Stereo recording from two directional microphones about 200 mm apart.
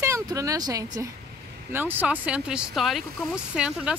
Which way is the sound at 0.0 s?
15° right (ahead or behind).